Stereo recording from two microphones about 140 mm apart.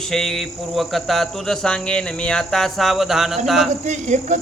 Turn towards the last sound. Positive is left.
turn(degrees=-60)  # may be behind; listen again after turning